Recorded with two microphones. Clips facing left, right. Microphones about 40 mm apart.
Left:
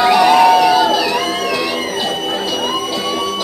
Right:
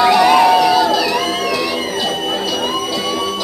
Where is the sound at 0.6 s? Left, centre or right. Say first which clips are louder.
Left 1 dB; centre.